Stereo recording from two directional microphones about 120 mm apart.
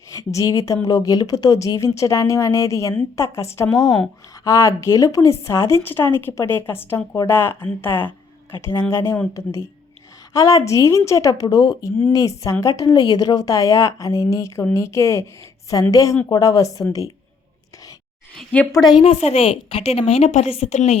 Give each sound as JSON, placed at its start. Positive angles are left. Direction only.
{"t": 0.1, "sound": "speech", "side_deg": 25}
{"t": 4.4, "sound": "speech", "side_deg": 25}
{"t": 18.3, "sound": "a woman's voice", "side_deg": 10}
{"t": 18.7, "sound": "a woman's voice", "side_deg": 35}
{"t": 19.0, "sound": "a woman's voice", "side_deg": 60}